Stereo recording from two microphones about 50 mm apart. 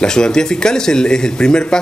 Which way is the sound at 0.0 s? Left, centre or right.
Centre.